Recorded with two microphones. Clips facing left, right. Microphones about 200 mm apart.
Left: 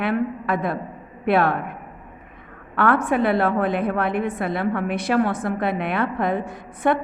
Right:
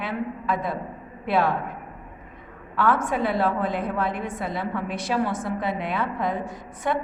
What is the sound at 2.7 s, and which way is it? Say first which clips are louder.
A woman's voice: left 4 dB; 60° left (ahead or behind).